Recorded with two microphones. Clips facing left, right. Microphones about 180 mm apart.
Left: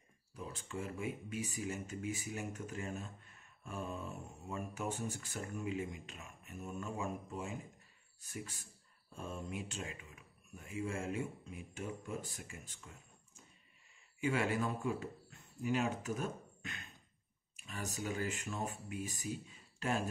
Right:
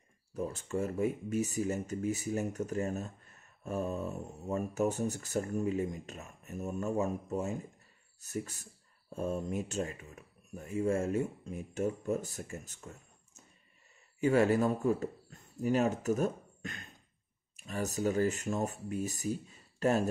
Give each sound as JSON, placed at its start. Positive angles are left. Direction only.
{"t": 0.3, "sound": "speech", "side_deg": -45}
{"t": 14.2, "sound": "speech", "side_deg": -40}